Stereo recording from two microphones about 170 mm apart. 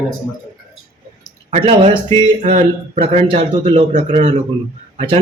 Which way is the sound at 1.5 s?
35° right (ahead or behind).